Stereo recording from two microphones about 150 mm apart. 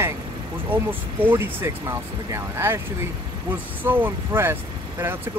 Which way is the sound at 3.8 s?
15° right (ahead or behind).